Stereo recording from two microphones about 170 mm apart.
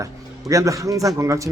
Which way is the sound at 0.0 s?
20° right (ahead or behind).